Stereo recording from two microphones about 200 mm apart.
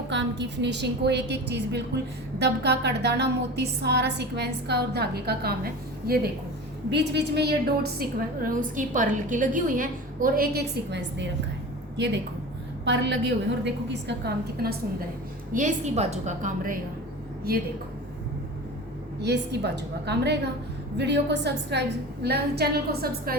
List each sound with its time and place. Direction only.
0.1 s a woman's voice: 60° right (ahead or behind)
8.4 s a woman's voice: 40° right (ahead or behind); by 11.3 s 55° right (ahead or behind)
12.8 s a woman's voice: 60° right (ahead or behind)
15.5 s a woman's voice: 35° right (ahead or behind)
19.2 s a woman's voice: 55° right (ahead or behind)